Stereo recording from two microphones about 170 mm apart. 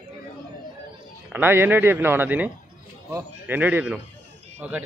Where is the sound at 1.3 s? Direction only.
10° right (ahead or behind).